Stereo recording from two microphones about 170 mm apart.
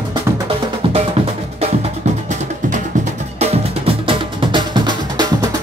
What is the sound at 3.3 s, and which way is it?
Music, 30° right (ahead or behind).